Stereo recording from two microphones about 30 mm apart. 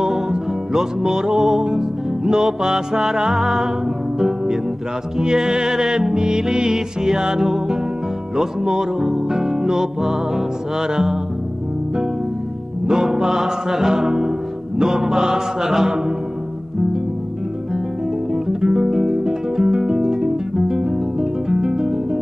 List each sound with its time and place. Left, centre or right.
0.3 s music: centre
5.2 s music: right
12.8 s music: centre
18.3 s guitar: centre